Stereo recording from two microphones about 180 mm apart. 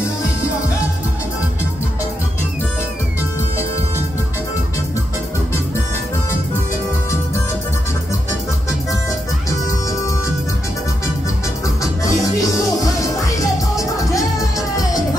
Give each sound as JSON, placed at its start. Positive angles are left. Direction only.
{"t": 9.5, "sound": "music", "side_deg": 20}
{"t": 11.6, "sound": "music", "side_deg": 15}